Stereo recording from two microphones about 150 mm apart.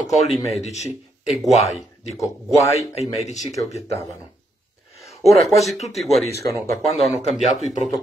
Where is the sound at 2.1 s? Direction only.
20° left (ahead or behind).